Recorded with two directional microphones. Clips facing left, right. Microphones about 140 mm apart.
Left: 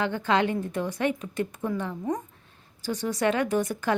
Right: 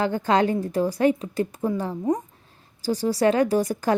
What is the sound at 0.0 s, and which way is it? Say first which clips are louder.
Speech: right 4 dB; 40° right (ahead or behind).